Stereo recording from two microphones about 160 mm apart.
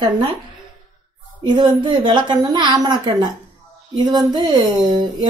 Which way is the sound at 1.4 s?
30° right (ahead or behind).